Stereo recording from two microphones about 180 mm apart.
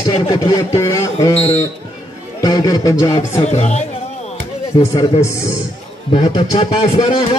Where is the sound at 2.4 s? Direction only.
20° left (ahead or behind).